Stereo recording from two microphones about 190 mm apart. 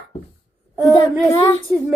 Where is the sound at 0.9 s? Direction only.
15° left (ahead or behind).